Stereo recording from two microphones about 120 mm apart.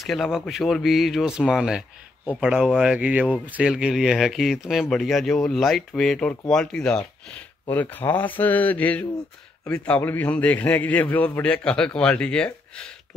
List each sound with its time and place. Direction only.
0.0 s a man's voice: centre (ahead or behind)